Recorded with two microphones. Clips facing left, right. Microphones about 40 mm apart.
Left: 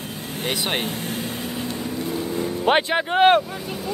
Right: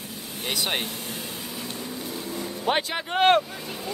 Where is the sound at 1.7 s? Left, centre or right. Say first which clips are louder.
Left 7 dB; left.